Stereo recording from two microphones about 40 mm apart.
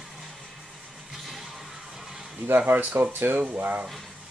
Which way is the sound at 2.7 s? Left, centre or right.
Right.